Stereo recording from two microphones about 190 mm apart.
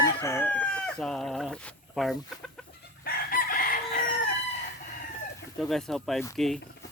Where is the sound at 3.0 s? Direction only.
50° left (ahead or behind).